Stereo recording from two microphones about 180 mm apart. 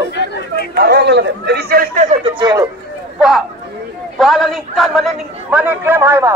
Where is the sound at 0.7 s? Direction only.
65° right (ahead or behind).